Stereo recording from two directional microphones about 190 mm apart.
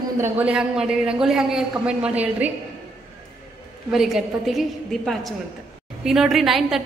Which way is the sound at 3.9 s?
Centre (ahead or behind).